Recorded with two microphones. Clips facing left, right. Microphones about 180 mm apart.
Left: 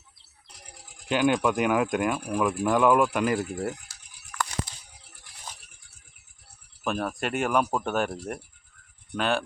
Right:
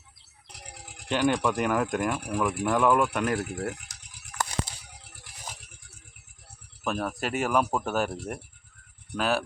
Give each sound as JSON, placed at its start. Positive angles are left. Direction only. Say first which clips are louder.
{"t": 0.5, "sound": "a sound", "louder": "right 5 dB", "side_deg": -75}
{"t": 1.0, "sound": "speech", "louder": "left 2 dB", "side_deg": 5}
{"t": 6.8, "sound": "speech", "louder": "left 1 dB", "side_deg": 0}